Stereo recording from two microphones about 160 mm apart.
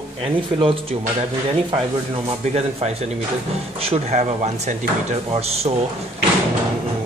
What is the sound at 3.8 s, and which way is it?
Speech, 40° right (ahead or behind).